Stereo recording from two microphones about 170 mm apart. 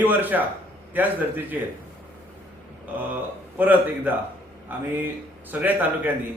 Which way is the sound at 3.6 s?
10° right (ahead or behind).